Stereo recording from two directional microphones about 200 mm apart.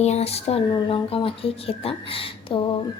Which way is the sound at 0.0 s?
30° left (ahead or behind).